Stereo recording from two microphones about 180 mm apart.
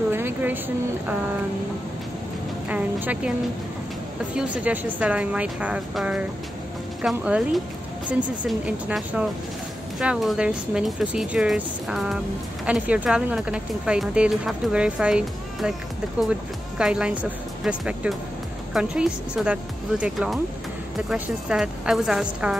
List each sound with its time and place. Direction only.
0.1 s a sound: 10° right (ahead or behind)
2.7 s speech: 10° right (ahead or behind)
4.4 s a woman's voice: 10° right (ahead or behind)
16.7 s a woman's voice: 5° right (ahead or behind)